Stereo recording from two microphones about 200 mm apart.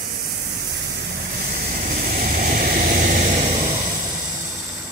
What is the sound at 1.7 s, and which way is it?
Vehicle, 45° right (ahead or behind).